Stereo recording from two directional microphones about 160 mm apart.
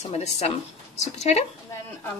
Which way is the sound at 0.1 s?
40° left (ahead or behind).